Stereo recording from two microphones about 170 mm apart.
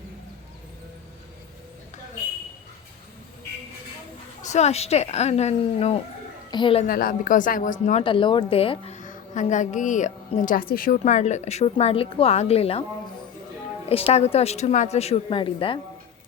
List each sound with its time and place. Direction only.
4.4 s a woman's voice: 40° left (ahead or behind)
6.8 s a woman's voice: 55° left (ahead or behind)
8.0 s a woman's voice: 30° left (ahead or behind)
9.0 s a woman's voice: 45° left (ahead or behind)
13.9 s a woman's voice: 35° left (ahead or behind)